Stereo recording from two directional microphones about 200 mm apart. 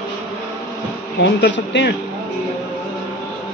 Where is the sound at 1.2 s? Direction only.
65° left (ahead or behind).